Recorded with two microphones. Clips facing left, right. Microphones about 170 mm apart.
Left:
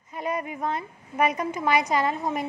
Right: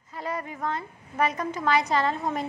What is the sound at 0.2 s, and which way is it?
A woman's voice, 15° left (ahead or behind).